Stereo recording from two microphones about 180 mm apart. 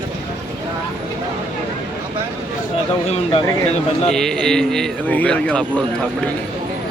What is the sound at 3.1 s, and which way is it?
Speech, 35° left (ahead or behind).